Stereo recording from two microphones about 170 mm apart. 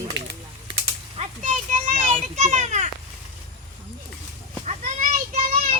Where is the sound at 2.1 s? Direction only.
45° right (ahead or behind).